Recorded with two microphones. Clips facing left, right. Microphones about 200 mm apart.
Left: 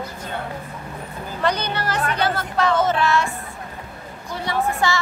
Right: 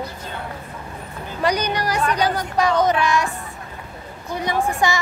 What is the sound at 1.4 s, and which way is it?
A woman's voice, 10° right (ahead or behind).